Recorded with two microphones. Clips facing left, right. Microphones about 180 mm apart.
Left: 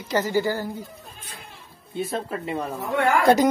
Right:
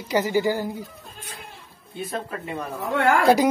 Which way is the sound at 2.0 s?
25° left (ahead or behind).